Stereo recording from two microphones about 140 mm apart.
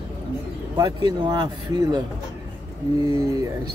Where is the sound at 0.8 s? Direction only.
30° right (ahead or behind).